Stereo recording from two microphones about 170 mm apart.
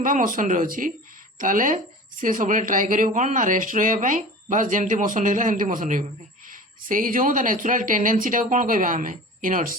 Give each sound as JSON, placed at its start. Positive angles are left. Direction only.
{"t": 0.0, "sound": "speech", "side_deg": -50}